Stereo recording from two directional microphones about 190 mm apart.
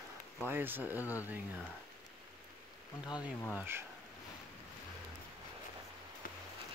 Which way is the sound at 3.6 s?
10° right (ahead or behind).